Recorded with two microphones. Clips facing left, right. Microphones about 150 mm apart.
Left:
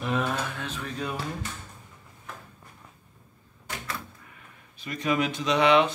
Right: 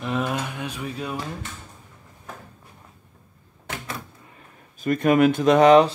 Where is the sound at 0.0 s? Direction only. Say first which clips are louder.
Right 2 dB; 5° right (ahead or behind).